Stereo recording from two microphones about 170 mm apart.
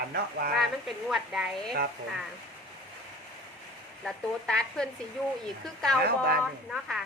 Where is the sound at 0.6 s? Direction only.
Centre (ahead or behind).